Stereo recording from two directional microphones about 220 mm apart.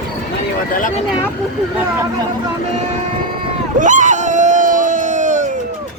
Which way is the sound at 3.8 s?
35° right (ahead or behind).